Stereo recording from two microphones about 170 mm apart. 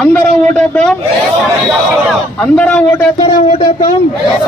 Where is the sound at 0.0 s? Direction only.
10° left (ahead or behind).